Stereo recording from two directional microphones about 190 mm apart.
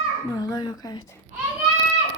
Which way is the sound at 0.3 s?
20° left (ahead or behind).